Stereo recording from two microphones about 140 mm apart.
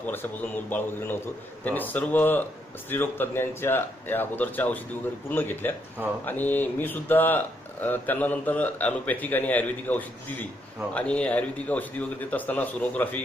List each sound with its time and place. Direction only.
0.0 s speech: 15° left (ahead or behind)